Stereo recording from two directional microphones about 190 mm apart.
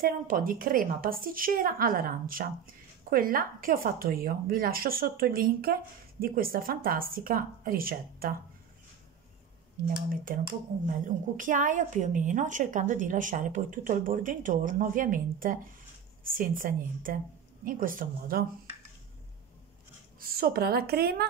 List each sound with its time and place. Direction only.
0.0 s a woman's voice: 50° right (ahead or behind)
10.0 s a woman's voice: 50° right (ahead or behind)
20.2 s a woman's voice: 50° right (ahead or behind)